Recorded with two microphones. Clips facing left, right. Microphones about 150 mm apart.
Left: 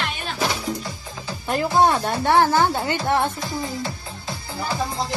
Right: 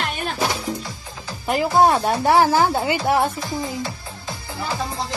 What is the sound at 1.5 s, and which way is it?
A woman's voice, 5° right (ahead or behind).